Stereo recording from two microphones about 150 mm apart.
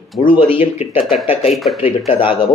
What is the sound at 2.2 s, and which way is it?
Speech, 35° left (ahead or behind).